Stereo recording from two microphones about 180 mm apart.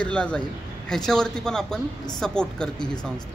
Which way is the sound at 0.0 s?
5° left (ahead or behind).